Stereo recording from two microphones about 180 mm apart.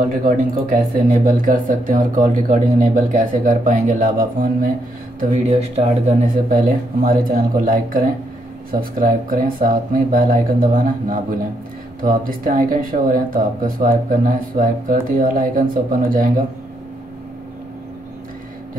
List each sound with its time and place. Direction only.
0.2 s speech: 50° right (ahead or behind)
5.3 s speech: 35° right (ahead or behind)